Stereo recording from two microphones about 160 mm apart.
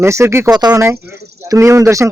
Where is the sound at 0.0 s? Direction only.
15° right (ahead or behind).